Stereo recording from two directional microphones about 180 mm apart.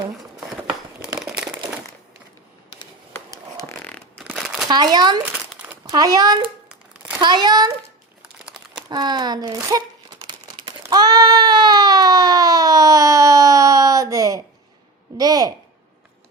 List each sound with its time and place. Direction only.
0.2 s crumpling: 5° right (ahead or behind)
3.6 s a sound: 10° left (ahead or behind)
4.2 s a sound: centre (ahead or behind)
4.7 s speech: 20° right (ahead or behind)
5.2 s crumpling: 10° right (ahead or behind)
5.8 s speech: 20° right (ahead or behind)
8.9 s speech: 25° right (ahead or behind)
9.6 s crumpling: 20° right (ahead or behind)
15.2 s speech: 20° right (ahead or behind)